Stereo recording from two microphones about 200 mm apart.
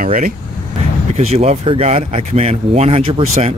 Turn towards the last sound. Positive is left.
turn(degrees=-30)  # may be behind; listen again after turning